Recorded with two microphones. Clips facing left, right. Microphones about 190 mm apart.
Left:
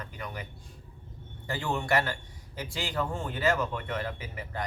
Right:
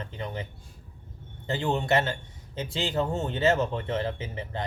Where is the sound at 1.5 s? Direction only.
20° right (ahead or behind).